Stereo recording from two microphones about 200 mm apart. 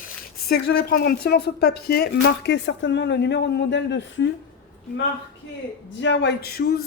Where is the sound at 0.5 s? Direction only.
50° left (ahead or behind).